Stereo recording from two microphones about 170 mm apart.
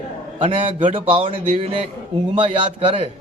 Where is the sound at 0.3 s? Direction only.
30° right (ahead or behind).